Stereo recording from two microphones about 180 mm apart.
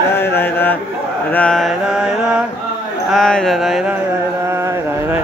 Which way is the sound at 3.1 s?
5° left (ahead or behind).